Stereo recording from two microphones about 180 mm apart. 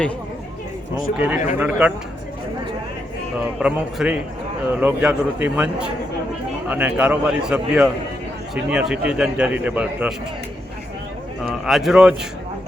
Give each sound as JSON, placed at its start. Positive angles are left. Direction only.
{"t": 1.1, "sound": "a man's voice", "side_deg": -10}
{"t": 3.6, "sound": "a man's voice", "side_deg": -5}
{"t": 11.4, "sound": "a man's voice", "side_deg": 0}